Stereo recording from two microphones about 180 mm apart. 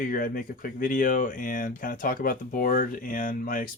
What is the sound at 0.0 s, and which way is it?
Speech, 50° left (ahead or behind).